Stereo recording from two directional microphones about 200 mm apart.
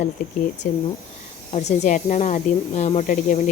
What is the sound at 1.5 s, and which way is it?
A woman's voice, 35° left (ahead or behind).